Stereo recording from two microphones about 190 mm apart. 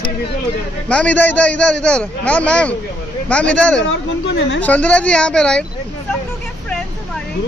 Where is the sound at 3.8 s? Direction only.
75° left (ahead or behind).